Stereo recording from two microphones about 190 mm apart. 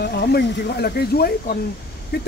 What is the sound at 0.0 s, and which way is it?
Speech, 60° left (ahead or behind).